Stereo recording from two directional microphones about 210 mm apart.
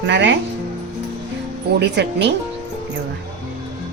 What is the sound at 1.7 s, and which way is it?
Speech, 55° right (ahead or behind).